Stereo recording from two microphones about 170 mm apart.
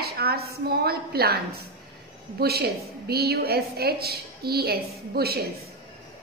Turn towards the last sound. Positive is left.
turn(degrees=-65)  # may be behind; listen again after turning